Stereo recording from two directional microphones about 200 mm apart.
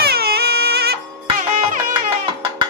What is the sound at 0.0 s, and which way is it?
Music, 50° right (ahead or behind).